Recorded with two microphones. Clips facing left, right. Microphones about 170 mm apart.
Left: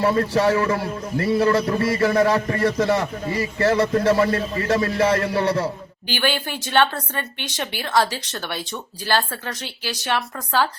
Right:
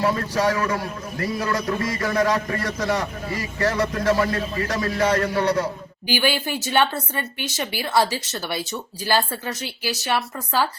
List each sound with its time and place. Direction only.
0.0 s a man's voice: 30° left (ahead or behind)
6.1 s speech: 10° right (ahead or behind)